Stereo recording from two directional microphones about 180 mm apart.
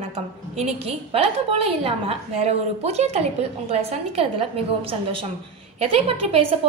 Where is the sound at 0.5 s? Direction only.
35° right (ahead or behind).